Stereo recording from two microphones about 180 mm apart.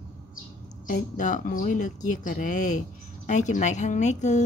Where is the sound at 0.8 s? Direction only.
45° left (ahead or behind).